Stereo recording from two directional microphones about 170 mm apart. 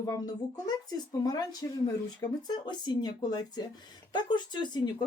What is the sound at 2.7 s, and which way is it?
Speech, 25° left (ahead or behind).